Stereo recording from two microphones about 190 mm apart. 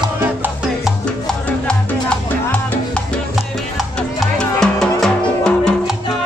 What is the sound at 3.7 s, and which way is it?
Music, centre (ahead or behind).